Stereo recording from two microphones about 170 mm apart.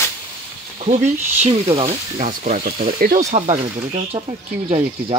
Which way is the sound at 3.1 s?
40° right (ahead or behind).